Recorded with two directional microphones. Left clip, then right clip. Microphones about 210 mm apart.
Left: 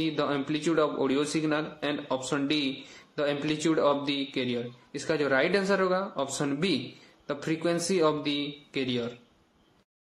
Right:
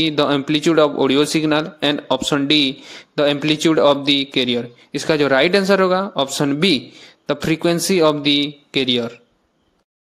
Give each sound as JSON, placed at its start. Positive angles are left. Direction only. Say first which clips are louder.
{"t": 0.0, "sound": "a man's voice", "louder": "right 12 dB", "side_deg": -40}